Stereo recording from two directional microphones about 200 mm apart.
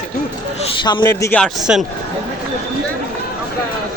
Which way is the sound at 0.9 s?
20° left (ahead or behind).